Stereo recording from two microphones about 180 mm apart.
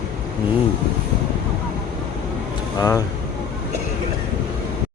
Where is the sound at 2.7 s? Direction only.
20° left (ahead or behind).